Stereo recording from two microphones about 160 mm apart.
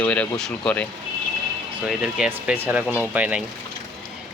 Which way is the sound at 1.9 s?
5° right (ahead or behind).